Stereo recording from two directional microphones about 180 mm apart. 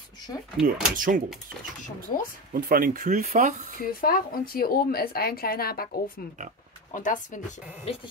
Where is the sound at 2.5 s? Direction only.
55° right (ahead or behind).